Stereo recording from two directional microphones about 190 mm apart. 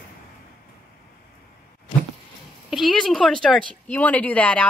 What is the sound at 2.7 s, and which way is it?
Speech, centre (ahead or behind).